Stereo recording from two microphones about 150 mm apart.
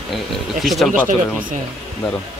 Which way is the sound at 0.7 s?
Centre (ahead or behind).